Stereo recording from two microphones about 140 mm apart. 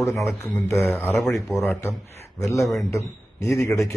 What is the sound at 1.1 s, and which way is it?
Speech, centre (ahead or behind).